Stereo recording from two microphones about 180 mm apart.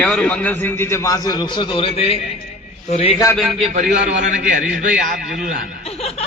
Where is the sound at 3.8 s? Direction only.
50° right (ahead or behind).